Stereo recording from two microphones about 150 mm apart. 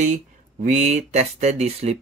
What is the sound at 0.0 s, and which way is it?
Speech, 55° right (ahead or behind).